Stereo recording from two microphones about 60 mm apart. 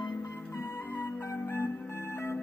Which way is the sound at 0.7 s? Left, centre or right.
Left.